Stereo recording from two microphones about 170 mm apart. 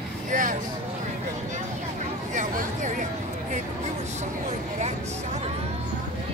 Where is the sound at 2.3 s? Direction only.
45° right (ahead or behind).